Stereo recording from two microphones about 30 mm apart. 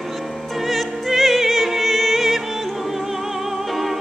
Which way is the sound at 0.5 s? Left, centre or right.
Centre.